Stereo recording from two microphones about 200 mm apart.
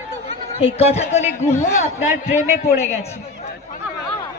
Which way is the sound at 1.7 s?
35° left (ahead or behind).